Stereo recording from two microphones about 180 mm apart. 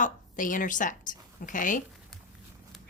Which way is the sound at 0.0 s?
45° left (ahead or behind).